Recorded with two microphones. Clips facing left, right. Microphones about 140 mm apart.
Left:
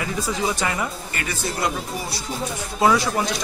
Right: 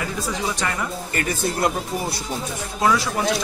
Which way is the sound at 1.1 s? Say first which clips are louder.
Right 4 dB; 50° right (ahead or behind).